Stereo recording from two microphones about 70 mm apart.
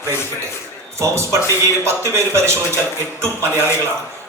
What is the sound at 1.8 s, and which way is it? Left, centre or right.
Speech, right.